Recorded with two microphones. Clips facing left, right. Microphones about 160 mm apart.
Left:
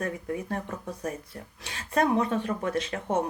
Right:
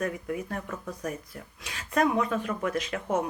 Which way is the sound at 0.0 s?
30° left (ahead or behind).